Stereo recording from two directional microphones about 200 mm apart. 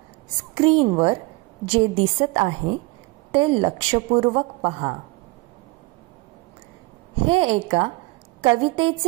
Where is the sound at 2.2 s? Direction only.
30° right (ahead or behind).